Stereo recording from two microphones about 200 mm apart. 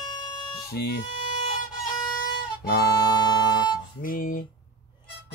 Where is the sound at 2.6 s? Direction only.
50° left (ahead or behind).